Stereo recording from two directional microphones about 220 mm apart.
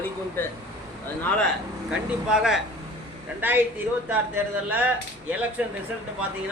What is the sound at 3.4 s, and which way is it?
A man's voice, 10° right (ahead or behind).